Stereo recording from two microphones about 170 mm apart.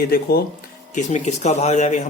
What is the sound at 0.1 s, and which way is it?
Speech, 65° left (ahead or behind).